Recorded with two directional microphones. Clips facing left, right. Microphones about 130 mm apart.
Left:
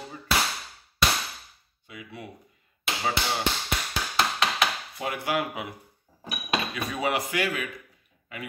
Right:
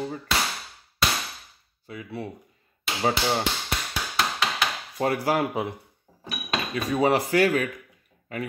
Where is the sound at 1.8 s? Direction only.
30° right (ahead or behind).